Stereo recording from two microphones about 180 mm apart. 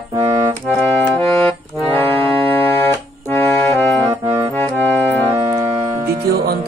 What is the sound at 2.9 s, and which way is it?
Music, 15° left (ahead or behind).